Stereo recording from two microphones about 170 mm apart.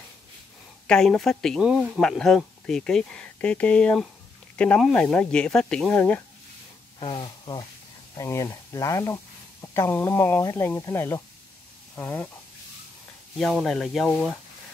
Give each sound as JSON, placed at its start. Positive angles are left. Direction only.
{"t": 0.8, "sound": "speech", "side_deg": 5}
{"t": 7.0, "sound": "speech", "side_deg": 30}
{"t": 13.4, "sound": "speech", "side_deg": 0}